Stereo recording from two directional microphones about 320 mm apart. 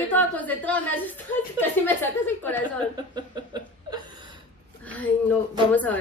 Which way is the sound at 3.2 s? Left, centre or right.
Centre.